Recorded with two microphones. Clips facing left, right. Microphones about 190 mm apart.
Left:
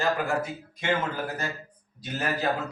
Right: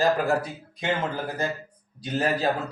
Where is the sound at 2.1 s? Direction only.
30° right (ahead or behind).